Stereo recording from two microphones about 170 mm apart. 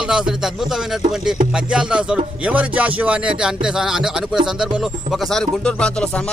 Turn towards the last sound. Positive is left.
turn(degrees=5)  # may be behind; listen again after turning